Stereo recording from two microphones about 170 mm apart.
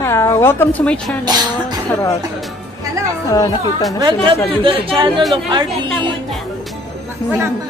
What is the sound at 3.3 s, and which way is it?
Speech, 20° left (ahead or behind).